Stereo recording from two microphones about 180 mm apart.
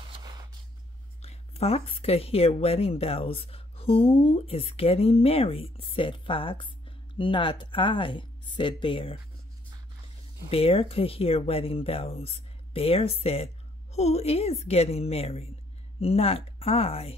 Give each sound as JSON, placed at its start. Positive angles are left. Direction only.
{"t": 0.1, "sound": "a sound", "side_deg": -25}
{"t": 1.2, "sound": "speech", "side_deg": 35}
{"t": 10.5, "sound": "speech", "side_deg": 30}